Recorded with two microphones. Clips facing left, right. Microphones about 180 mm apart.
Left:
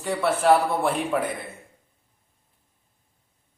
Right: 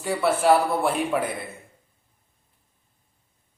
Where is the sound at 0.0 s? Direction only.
5° right (ahead or behind).